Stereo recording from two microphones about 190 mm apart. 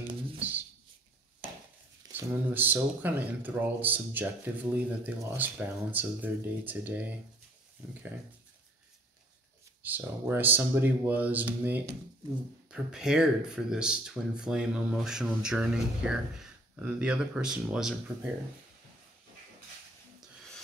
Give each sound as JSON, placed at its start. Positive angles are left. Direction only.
{"t": 0.4, "sound": "a sound", "side_deg": -10}
{"t": 2.1, "sound": "speech", "side_deg": -10}
{"t": 9.8, "sound": "speech", "side_deg": -10}